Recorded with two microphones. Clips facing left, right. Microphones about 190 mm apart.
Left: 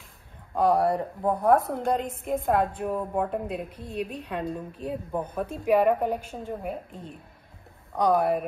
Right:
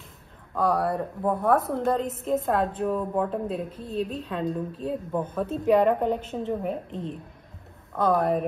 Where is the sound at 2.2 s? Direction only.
10° left (ahead or behind).